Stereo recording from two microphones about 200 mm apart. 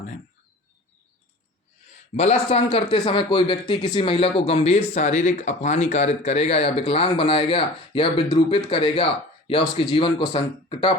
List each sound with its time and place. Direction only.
2.1 s a man's voice: 35° left (ahead or behind)